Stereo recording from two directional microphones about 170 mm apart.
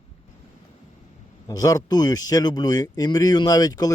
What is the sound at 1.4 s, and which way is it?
Speech, 20° left (ahead or behind).